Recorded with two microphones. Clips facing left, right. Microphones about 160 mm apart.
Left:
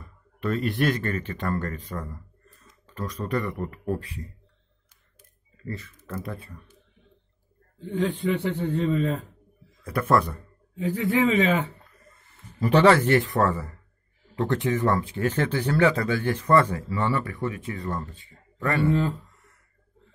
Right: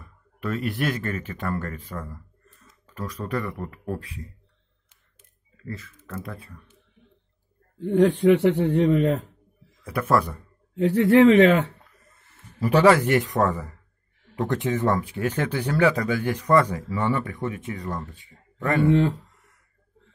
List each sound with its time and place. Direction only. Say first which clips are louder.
0.0 s speech: left 2 dB; 5° right (ahead or behind)
5.7 s speech: left 1 dB; centre (ahead or behind)
7.8 s speech: right 8 dB; 70° right (ahead or behind)
9.8 s speech: even; 10° right (ahead or behind)
10.7 s speech: right 7 dB; 75° right (ahead or behind)
12.5 s speech: right 1 dB; 5° right (ahead or behind)
18.9 s speech: right 4 dB; 90° right